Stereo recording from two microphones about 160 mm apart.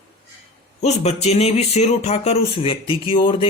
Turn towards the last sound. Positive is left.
turn(degrees=30)  # may be behind; listen again after turning